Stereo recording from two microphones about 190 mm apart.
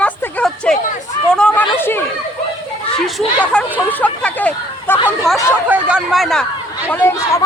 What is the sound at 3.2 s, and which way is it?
Hubbub, 5° left (ahead or behind).